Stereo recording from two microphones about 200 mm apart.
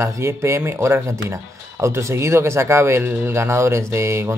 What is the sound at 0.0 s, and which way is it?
Speech, 15° right (ahead or behind).